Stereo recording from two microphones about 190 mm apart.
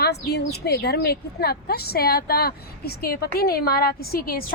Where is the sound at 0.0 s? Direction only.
60° left (ahead or behind).